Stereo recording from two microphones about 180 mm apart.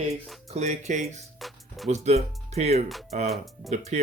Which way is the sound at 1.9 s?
35° right (ahead or behind).